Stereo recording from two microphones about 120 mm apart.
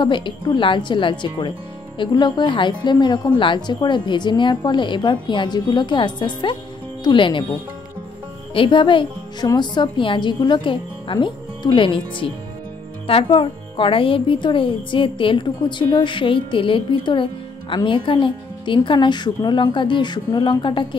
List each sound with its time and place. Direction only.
0.0 s a woman's voice: 40° left (ahead or behind)
8.5 s speech: 45° left (ahead or behind)